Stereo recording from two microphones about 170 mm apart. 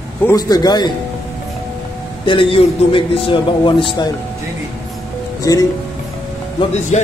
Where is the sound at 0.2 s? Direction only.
20° left (ahead or behind).